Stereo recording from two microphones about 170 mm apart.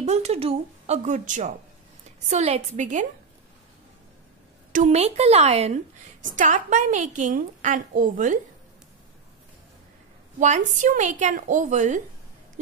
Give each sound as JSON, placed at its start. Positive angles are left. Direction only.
{"t": 0.0, "sound": "a woman's voice", "side_deg": -40}
{"t": 4.7, "sound": "a woman's voice", "side_deg": -40}
{"t": 6.2, "sound": "a woman's voice", "side_deg": -50}
{"t": 10.4, "sound": "a woman's voice", "side_deg": -45}